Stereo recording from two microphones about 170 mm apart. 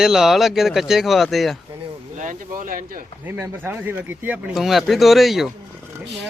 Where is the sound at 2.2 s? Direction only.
50° right (ahead or behind).